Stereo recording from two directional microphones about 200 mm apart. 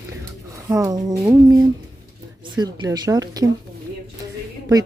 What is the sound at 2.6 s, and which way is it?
Speech, 20° right (ahead or behind).